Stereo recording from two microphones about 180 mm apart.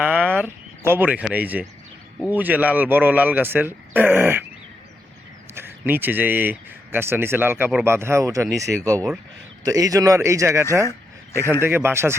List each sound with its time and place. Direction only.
0.0 s speech: 10° right (ahead or behind)
5.5 s speech: 10° right (ahead or behind)
9.6 s speech: 20° right (ahead or behind)
10.8 s a sound: 15° left (ahead or behind)
11.6 s speech: 10° right (ahead or behind)